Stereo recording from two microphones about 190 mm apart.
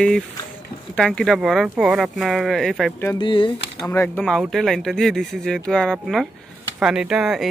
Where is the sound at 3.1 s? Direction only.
25° left (ahead or behind).